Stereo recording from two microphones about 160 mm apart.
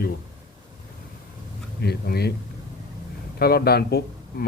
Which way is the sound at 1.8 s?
85° left.